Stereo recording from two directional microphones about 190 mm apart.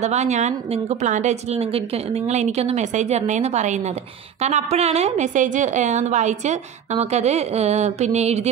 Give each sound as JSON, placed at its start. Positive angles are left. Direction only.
{"t": 0.0, "sound": "a woman's voice", "side_deg": -35}